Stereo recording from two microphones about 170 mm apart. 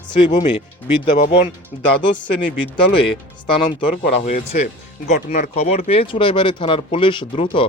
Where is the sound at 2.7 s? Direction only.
30° left (ahead or behind).